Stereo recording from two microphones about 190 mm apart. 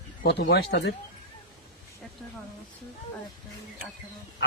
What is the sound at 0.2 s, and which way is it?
Speech, 60° left (ahead or behind).